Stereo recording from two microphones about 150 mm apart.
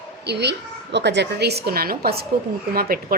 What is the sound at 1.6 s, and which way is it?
Speech, 90° right.